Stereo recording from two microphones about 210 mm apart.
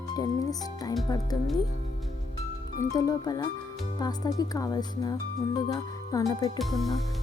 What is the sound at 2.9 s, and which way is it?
Speech, 20° left (ahead or behind).